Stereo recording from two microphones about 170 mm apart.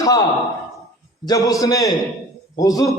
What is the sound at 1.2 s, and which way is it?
A man's voice, 20° left (ahead or behind).